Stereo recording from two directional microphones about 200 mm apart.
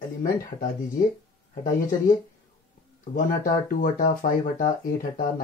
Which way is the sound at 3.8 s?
45° left (ahead or behind).